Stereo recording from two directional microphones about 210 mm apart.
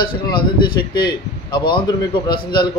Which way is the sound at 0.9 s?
20° left (ahead or behind).